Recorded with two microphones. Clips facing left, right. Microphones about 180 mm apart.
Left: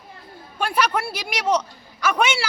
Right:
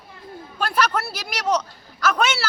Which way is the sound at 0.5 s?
10° left (ahead or behind).